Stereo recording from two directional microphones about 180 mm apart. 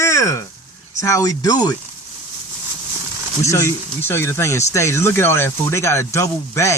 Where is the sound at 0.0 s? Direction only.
15° left (ahead or behind).